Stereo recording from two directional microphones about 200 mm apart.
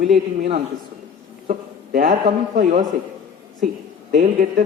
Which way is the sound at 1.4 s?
45° right (ahead or behind).